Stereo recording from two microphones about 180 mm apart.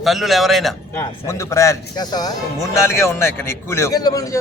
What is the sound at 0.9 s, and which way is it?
A man's voice, 15° left (ahead or behind).